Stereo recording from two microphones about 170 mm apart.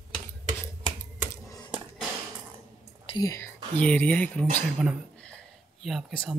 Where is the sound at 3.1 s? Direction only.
20° left (ahead or behind).